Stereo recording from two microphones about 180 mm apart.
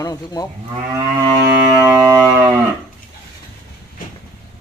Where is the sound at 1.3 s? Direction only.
20° right (ahead or behind).